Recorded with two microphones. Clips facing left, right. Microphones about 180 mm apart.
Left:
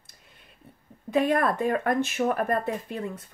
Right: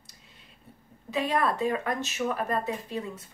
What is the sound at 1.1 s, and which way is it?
Speech, 50° left (ahead or behind).